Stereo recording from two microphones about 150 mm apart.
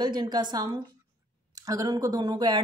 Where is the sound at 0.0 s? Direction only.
30° right (ahead or behind).